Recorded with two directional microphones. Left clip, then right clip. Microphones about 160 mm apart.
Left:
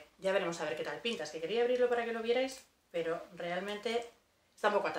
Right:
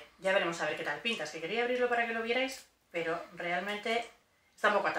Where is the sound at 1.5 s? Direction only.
35° left (ahead or behind).